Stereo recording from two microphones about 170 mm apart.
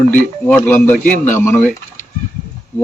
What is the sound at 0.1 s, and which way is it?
Speech, 10° left (ahead or behind).